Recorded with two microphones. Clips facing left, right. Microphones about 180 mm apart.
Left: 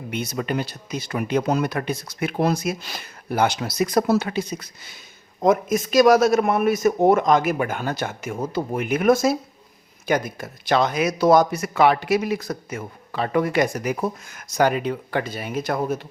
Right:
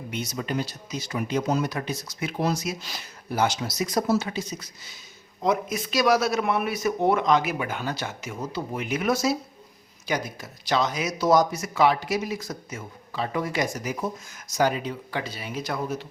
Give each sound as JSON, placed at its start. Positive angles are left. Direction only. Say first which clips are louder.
{"t": 0.1, "sound": "speech", "louder": "left 4 dB", "side_deg": 60}
{"t": 5.4, "sound": "a man's voice", "louder": "left 6 dB", "side_deg": 45}